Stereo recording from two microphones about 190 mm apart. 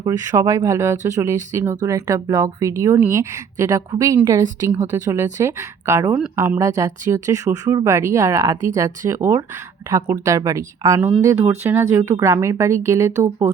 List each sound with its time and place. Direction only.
0.0 s speech: 20° right (ahead or behind)